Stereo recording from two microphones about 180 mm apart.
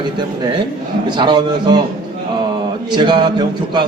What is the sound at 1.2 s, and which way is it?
Speech, 25° right (ahead or behind).